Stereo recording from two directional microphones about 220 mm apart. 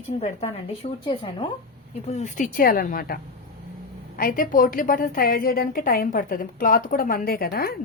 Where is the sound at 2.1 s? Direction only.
35° left (ahead or behind).